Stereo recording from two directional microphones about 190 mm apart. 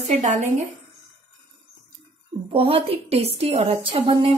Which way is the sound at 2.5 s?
30° right (ahead or behind).